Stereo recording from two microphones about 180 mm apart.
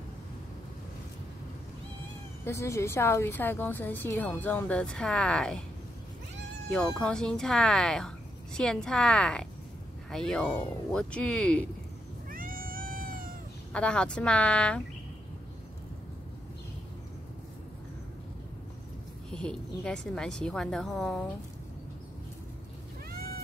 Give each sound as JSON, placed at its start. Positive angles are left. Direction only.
{"t": 2.4, "sound": "a woman's voice", "side_deg": 15}
{"t": 6.7, "sound": "speech", "side_deg": 5}
{"t": 12.3, "sound": "cat", "side_deg": -50}
{"t": 13.7, "sound": "speech", "side_deg": 5}
{"t": 19.3, "sound": "a woman's voice", "side_deg": 5}
{"t": 23.1, "sound": "boat", "side_deg": -60}